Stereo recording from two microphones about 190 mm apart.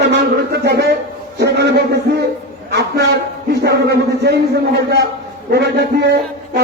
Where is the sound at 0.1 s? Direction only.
60° right (ahead or behind).